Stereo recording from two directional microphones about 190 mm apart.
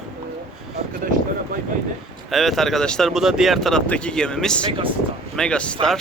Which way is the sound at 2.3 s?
Centre (ahead or behind).